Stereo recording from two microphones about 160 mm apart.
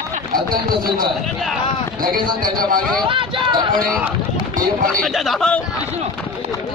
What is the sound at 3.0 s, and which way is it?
Speech, 30° right (ahead or behind).